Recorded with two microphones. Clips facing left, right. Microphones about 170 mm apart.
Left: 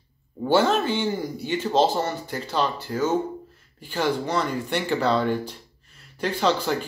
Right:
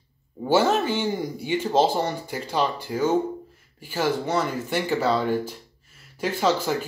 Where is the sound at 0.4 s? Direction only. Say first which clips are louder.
Even; 10° right (ahead or behind).